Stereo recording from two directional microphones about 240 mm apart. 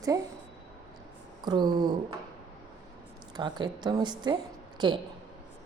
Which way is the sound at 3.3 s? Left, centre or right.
Centre.